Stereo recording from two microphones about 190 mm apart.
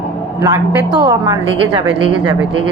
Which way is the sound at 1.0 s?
20° right (ahead or behind).